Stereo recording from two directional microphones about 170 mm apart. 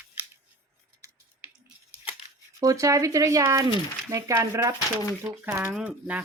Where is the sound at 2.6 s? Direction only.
20° right (ahead or behind).